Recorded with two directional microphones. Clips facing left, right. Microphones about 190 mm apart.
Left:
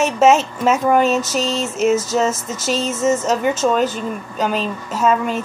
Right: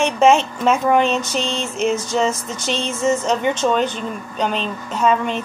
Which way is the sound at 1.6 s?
45° left (ahead or behind).